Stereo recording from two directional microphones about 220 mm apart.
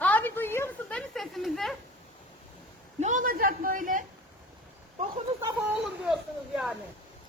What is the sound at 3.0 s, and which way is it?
A man's voice, 35° right (ahead or behind).